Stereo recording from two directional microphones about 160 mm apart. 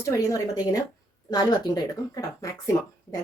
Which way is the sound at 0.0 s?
20° left (ahead or behind).